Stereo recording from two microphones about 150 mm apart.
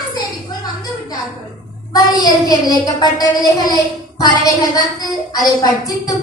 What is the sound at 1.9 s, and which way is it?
A woman's voice, 25° left (ahead or behind).